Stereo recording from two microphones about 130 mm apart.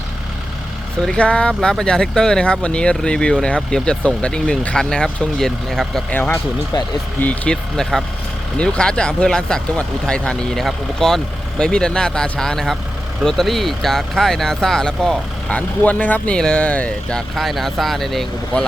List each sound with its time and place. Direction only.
1.0 s speech: 10° left (ahead or behind)
6.1 s speech: 15° left (ahead or behind)
6.7 s speech: 35° left (ahead or behind)
7.2 s speech: 10° left (ahead or behind)